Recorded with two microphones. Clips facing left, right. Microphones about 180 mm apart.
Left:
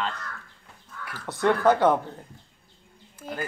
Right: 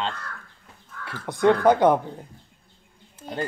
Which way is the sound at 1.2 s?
15° right (ahead or behind).